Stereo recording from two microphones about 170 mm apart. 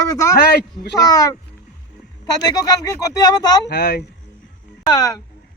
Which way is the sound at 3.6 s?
65° left (ahead or behind).